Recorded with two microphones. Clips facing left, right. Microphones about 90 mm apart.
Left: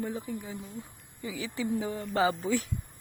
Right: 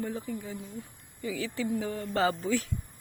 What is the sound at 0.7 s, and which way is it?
A woman's voice, 20° left (ahead or behind).